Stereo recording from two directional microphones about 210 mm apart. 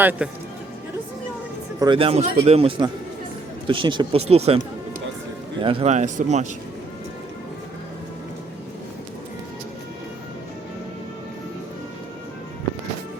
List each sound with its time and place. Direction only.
0.0 s speech: 10° right (ahead or behind)
1.8 s a man's voice: 25° right (ahead or behind)
5.6 s speech: 30° right (ahead or behind)